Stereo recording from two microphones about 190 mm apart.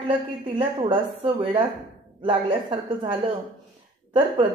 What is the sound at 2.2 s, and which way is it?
A woman's voice, 25° right (ahead or behind).